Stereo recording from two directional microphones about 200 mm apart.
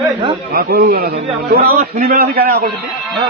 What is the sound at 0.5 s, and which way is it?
A man's voice, 50° right (ahead or behind).